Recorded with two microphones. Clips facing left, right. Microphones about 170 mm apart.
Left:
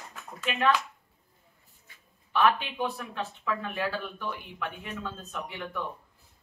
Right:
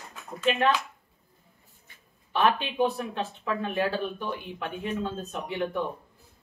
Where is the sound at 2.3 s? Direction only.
25° right (ahead or behind).